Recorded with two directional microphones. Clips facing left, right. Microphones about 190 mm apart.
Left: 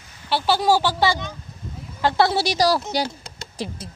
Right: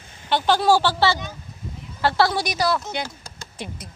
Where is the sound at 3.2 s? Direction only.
30° left (ahead or behind).